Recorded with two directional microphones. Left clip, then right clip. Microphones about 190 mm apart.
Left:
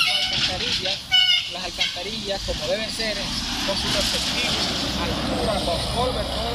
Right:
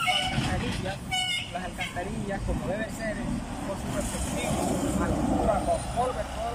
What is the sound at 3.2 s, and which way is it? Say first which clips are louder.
Speech: left 9 dB; 30° right (ahead or behind).